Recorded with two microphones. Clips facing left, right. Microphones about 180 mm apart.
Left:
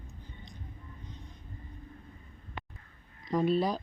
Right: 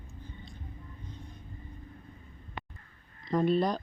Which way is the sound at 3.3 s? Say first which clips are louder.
Right 1 dB; centre (ahead or behind).